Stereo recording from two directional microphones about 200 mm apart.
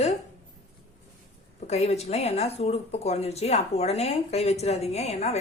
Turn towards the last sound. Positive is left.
turn(degrees=35)  # may be behind; listen again after turning